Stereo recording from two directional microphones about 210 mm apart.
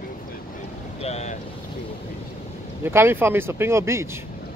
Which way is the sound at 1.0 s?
30° left (ahead or behind).